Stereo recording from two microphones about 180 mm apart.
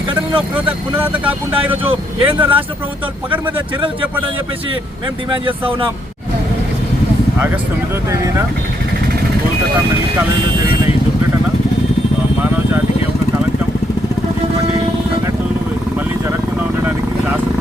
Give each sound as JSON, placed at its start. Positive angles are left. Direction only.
{"t": 0.5, "sound": "speech", "side_deg": -10}
{"t": 8.1, "sound": "speech", "side_deg": -15}